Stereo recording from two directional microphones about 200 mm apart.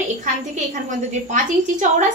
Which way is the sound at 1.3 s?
40° right (ahead or behind).